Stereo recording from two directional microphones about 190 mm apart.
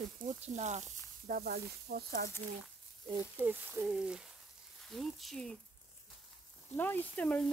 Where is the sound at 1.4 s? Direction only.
55° right (ahead or behind).